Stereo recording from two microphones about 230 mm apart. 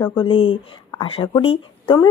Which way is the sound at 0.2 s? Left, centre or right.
Left.